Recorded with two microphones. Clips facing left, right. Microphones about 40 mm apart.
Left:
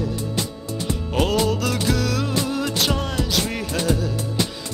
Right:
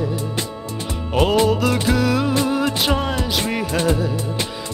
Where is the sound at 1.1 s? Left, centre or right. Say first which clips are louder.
Right 5 dB; centre.